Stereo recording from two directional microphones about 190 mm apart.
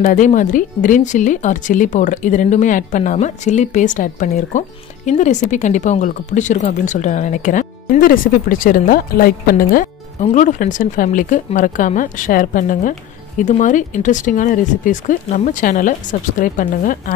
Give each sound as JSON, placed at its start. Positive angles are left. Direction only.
{"t": 0.0, "sound": "speech", "side_deg": 40}